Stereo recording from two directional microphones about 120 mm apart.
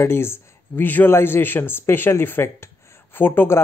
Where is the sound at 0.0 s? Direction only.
20° left (ahead or behind).